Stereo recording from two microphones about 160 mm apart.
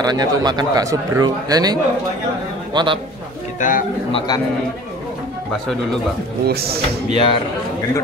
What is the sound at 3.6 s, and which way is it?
Speech, 50° left (ahead or behind).